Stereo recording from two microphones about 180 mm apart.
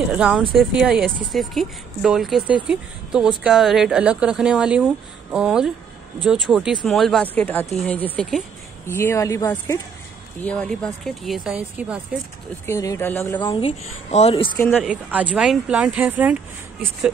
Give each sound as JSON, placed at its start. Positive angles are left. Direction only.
{"t": 0.1, "sound": "a woman's voice", "side_deg": -5}
{"t": 8.8, "sound": "a woman's voice", "side_deg": 15}
{"t": 12.6, "sound": "speech", "side_deg": 15}
{"t": 13.4, "sound": "speech", "side_deg": 30}
{"t": 14.8, "sound": "a woman's voice", "side_deg": -5}